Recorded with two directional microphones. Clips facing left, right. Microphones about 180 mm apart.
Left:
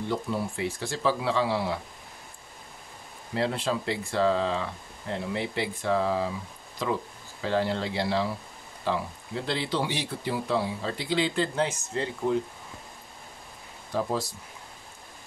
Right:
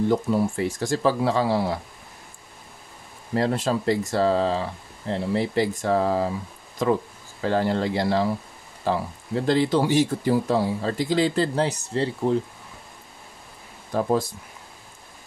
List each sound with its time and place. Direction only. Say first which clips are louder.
0.1 s speech: right 8 dB; 40° right (ahead or behind)
3.3 s speech: right 5 dB; 45° right (ahead or behind)
13.9 s speech: right 6 dB; 55° right (ahead or behind)